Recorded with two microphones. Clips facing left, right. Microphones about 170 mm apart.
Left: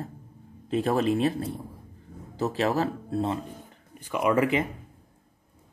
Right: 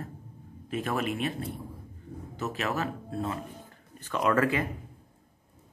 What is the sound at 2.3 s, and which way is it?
Speech, 35° left (ahead or behind).